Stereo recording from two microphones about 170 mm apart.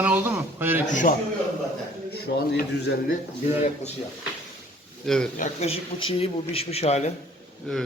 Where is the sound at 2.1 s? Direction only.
70° left (ahead or behind).